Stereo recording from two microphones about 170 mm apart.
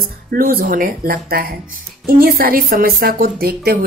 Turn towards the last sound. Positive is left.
turn(degrees=-65)  # may be behind; listen again after turning